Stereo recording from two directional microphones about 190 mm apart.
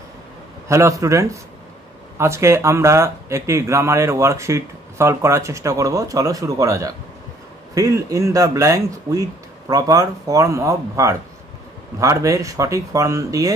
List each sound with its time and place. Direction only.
0.7 s speech: 15° right (ahead or behind)